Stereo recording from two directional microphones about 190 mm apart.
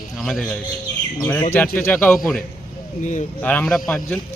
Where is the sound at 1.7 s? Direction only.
10° left (ahead or behind).